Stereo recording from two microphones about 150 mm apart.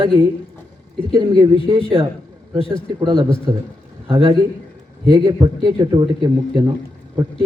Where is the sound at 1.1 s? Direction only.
30° right (ahead or behind).